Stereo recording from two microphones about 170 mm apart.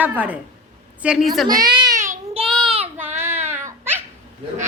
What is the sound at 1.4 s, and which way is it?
Baby cry, 25° right (ahead or behind).